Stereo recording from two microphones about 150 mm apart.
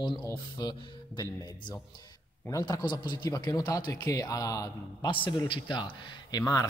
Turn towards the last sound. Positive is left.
turn(degrees=25)  # may be behind; listen again after turning